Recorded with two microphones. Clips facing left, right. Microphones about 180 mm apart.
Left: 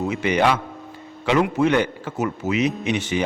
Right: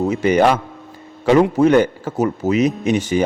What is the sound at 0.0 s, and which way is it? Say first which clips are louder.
A man's voice: right 5 dB; 40° right (ahead or behind).